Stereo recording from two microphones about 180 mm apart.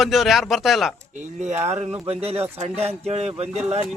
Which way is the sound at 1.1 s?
40° right (ahead or behind).